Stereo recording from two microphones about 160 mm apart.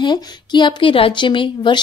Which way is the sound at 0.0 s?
25° left (ahead or behind).